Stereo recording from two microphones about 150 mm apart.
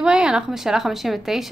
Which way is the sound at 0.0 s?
5° right (ahead or behind).